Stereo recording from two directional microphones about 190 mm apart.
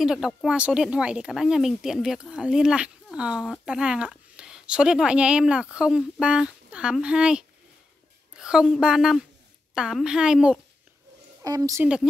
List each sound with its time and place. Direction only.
0.0 s speech: centre (ahead or behind)
11.4 s a woman's voice: 20° right (ahead or behind)